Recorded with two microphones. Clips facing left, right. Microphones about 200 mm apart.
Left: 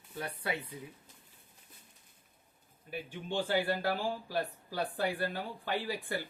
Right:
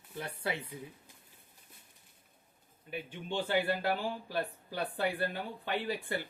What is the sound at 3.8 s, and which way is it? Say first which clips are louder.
Speech: even; 20° right (ahead or behind).